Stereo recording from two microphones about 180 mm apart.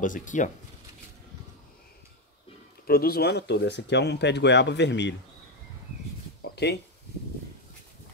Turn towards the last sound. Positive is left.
turn(degrees=65)  # may be behind; listen again after turning